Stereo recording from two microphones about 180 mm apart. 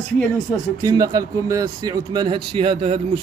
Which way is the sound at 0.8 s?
20° right (ahead or behind).